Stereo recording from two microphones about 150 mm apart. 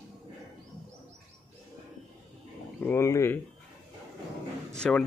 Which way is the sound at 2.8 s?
15° left (ahead or behind).